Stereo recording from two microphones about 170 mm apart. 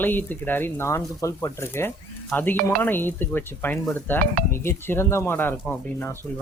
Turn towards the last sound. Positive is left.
turn(degrees=10)  # may be behind; listen again after turning